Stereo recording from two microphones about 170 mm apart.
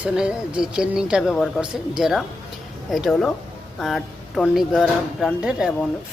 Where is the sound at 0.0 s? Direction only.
5° right (ahead or behind).